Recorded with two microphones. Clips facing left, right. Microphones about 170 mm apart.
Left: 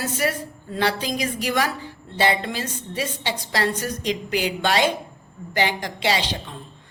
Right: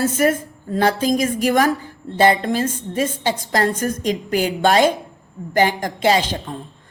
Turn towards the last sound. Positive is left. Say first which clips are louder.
# right 6 dB
turn(degrees=-45)  # may be behind; listen again after turning